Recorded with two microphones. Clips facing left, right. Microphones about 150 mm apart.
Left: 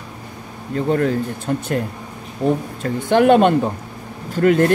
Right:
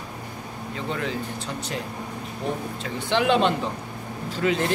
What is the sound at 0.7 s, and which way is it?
Speech, 50° left (ahead or behind).